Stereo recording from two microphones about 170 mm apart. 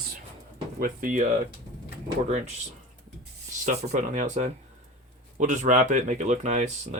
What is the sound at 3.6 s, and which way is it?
Speech, 45° right (ahead or behind).